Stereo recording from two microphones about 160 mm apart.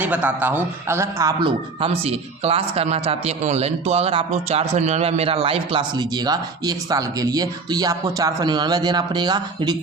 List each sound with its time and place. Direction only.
0.0 s a man's voice: 10° right (ahead or behind)
1.4 s speech: 30° right (ahead or behind)